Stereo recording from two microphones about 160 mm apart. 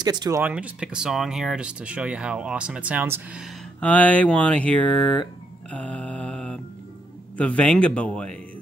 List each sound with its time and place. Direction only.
0.0 s speech: 25° right (ahead or behind)
0.4 s speech: 10° right (ahead or behind)
3.8 s speech: 10° left (ahead or behind)
5.7 s mantra: 10° left (ahead or behind)
7.3 s speech: 10° left (ahead or behind)